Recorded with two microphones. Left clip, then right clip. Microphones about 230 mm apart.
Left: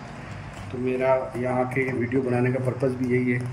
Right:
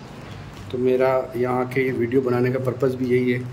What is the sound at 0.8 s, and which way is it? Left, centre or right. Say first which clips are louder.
Speech: right 3 dB; centre.